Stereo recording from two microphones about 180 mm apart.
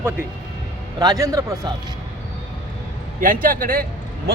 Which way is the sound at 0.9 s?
20° right (ahead or behind).